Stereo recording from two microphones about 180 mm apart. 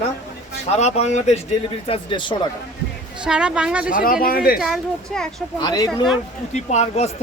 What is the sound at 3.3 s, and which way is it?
A woman's voice, 5° right (ahead or behind).